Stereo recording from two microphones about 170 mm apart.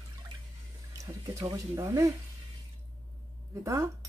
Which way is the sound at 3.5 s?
15° right (ahead or behind).